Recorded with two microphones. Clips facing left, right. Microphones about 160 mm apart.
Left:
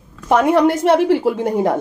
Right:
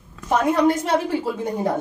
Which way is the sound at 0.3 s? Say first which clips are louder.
Left 5 dB; 70° left (ahead or behind).